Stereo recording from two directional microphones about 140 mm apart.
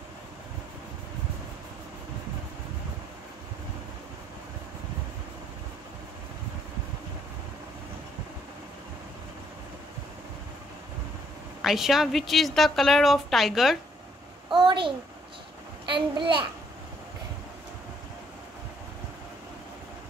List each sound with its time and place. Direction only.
11.6 s a woman's voice: centre (ahead or behind)
14.5 s a sound: 35° right (ahead or behind)
15.9 s a child's voice: 35° right (ahead or behind)